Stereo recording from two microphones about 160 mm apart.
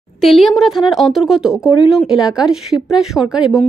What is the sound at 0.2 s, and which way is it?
A woman's voice, centre (ahead or behind).